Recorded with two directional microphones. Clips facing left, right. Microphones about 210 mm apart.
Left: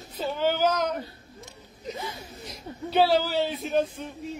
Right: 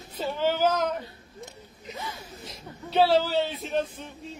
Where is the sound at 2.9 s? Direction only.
5° left (ahead or behind).